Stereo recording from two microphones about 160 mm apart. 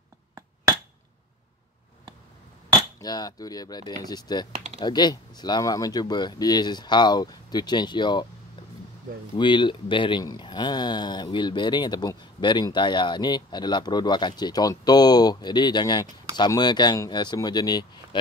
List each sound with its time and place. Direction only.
3.0 s speech: 25° left (ahead or behind)
9.4 s speech: 30° left (ahead or behind)